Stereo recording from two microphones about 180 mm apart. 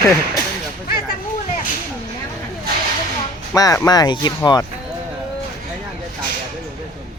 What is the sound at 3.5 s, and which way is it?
Speech, 20° left (ahead or behind).